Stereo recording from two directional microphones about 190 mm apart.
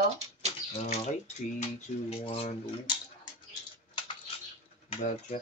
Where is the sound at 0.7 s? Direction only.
35° left (ahead or behind).